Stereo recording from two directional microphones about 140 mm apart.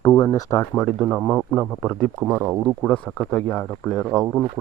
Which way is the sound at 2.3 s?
10° right (ahead or behind).